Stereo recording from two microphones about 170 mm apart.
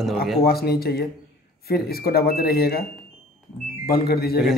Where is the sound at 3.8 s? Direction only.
65° left (ahead or behind).